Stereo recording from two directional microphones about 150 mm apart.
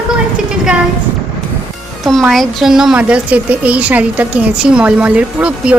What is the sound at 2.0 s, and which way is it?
A woman's voice, centre (ahead or behind).